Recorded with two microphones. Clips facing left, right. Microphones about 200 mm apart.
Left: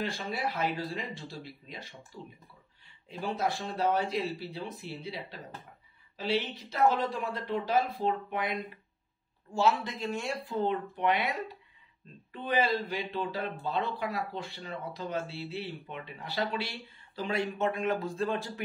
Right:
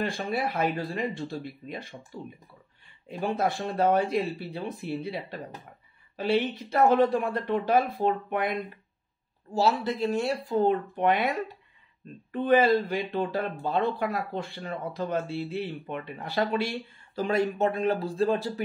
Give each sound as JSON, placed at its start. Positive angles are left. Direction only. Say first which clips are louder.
{"t": 0.0, "sound": "speech", "louder": "right 5 dB", "side_deg": -55}
{"t": 3.1, "sound": "speech", "louder": "right 4 dB", "side_deg": -55}
{"t": 9.5, "sound": "speech", "louder": "right 3 dB", "side_deg": -35}